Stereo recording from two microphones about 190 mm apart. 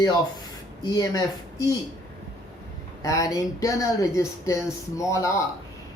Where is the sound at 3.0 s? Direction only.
15° left (ahead or behind).